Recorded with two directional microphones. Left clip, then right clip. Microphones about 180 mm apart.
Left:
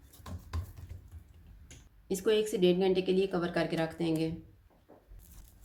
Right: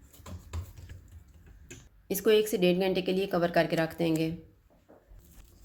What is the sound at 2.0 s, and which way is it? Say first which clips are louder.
A woman's voice: right 4 dB; 40° right (ahead or behind).